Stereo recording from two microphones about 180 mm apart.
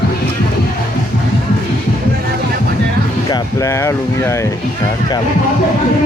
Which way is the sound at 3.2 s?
20° left (ahead or behind).